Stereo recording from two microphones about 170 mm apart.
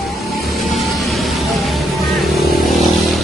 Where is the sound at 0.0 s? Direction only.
Centre (ahead or behind).